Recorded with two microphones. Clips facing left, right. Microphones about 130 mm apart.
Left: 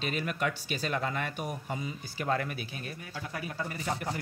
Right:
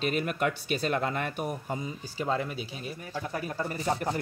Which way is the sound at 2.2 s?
10° right (ahead or behind).